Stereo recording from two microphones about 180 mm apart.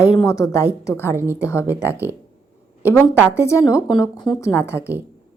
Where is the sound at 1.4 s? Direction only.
15° left (ahead or behind).